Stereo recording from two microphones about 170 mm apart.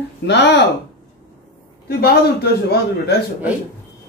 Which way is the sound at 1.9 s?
65° left (ahead or behind).